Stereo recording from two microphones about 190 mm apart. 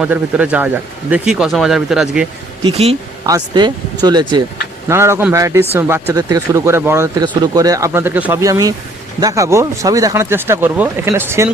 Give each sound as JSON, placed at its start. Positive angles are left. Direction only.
{"t": 0.0, "sound": "speech", "side_deg": -5}
{"t": 2.6, "sound": "a woman's voice", "side_deg": -30}